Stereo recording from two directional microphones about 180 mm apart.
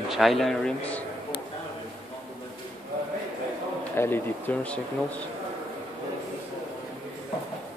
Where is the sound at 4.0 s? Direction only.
10° left (ahead or behind).